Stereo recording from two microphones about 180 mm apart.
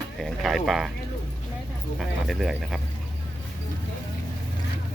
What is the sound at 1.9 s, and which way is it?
Speech, centre (ahead or behind).